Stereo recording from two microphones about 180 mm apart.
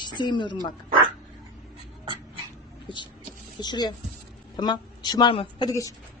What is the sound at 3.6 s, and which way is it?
Speech, 25° left (ahead or behind).